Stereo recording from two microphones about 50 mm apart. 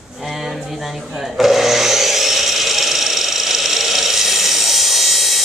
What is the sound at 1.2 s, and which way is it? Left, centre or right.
Wood, centre.